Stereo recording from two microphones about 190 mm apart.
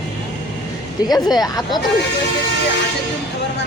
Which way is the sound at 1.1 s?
20° left (ahead or behind).